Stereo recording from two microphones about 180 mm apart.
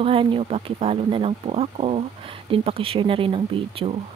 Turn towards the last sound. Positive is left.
turn(degrees=-30)  # may be behind; listen again after turning